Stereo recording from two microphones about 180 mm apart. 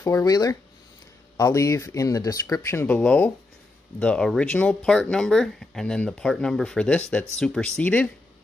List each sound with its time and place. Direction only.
0.0 s speech: 15° left (ahead or behind)